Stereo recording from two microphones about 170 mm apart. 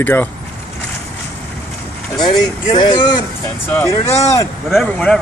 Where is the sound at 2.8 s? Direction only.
25° left (ahead or behind).